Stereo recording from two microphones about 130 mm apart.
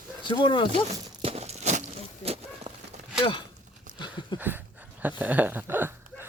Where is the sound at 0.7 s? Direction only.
55° right (ahead or behind).